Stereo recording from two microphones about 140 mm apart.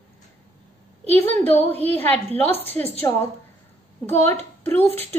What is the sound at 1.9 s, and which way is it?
A woman's voice, 15° left (ahead or behind).